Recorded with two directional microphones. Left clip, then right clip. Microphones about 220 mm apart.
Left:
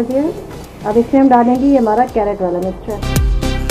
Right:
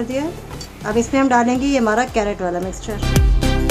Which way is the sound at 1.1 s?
40° right (ahead or behind).